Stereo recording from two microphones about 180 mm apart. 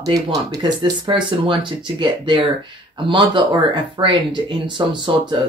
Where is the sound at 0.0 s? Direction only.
20° right (ahead or behind).